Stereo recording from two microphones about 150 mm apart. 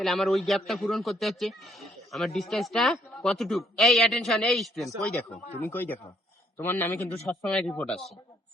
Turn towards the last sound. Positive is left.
turn(degrees=5)  # may be behind; listen again after turning